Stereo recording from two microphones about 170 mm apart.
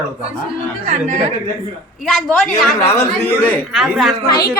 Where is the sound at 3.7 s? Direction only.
Centre (ahead or behind).